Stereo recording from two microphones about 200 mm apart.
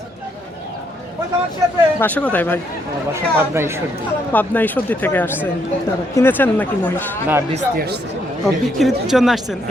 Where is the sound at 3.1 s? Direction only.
10° right (ahead or behind).